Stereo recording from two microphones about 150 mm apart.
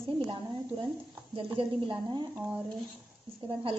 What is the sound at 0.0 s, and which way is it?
A woman's voice, 30° right (ahead or behind).